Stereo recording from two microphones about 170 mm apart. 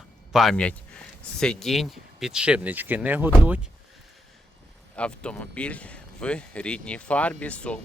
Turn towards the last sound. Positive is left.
turn(degrees=5)  # may be behind; listen again after turning